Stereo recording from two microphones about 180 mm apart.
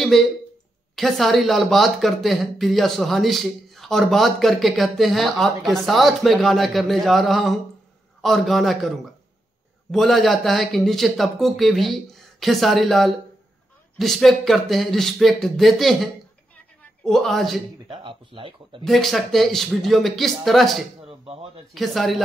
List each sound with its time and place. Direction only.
0.1 s speech: centre (ahead or behind)
17.8 s speech: 30° right (ahead or behind)
18.9 s speech: centre (ahead or behind)
21.0 s a sound: 35° right (ahead or behind)
21.7 s speech: centre (ahead or behind)